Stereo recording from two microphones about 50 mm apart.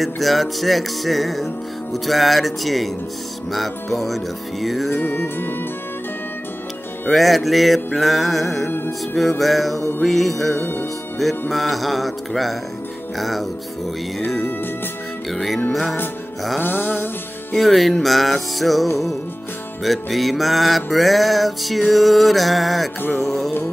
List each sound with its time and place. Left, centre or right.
0.0 s music: centre
4.9 s music: left
7.1 s music: centre
8.6 s music: left
9.4 s music: centre
10.6 s music: left
11.5 s music: centre
15.3 s music: centre
16.5 s music: left
17.6 s music: centre